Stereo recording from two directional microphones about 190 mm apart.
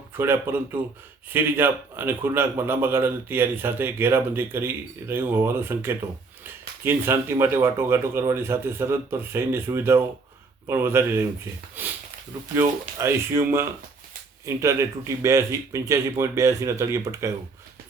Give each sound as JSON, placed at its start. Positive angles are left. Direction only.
{"t": 0.2, "sound": "a man's voice", "side_deg": -10}
{"t": 11.8, "sound": "sniff", "side_deg": -10}
{"t": 13.0, "sound": "a man's voice", "side_deg": -15}